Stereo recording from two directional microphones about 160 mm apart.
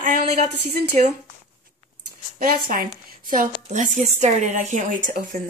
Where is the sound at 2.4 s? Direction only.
65° right (ahead or behind).